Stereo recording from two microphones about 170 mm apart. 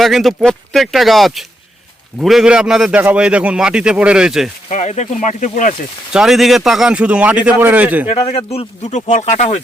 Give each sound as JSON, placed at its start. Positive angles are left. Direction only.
{"t": 0.0, "sound": "a man's voice", "side_deg": 0}
{"t": 4.7, "sound": "speech", "side_deg": 40}
{"t": 6.1, "sound": "a man's voice", "side_deg": 0}
{"t": 8.1, "sound": "speech", "side_deg": 35}